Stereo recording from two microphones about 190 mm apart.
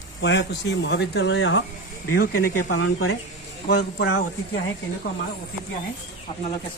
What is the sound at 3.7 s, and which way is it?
Speech, 60° left (ahead or behind).